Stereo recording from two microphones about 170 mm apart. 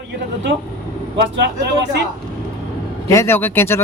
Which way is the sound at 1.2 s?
90° right.